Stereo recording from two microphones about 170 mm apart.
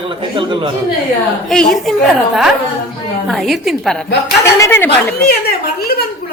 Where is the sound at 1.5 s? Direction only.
Centre (ahead or behind).